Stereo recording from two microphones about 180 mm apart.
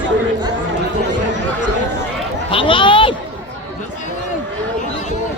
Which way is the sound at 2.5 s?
30° left (ahead or behind).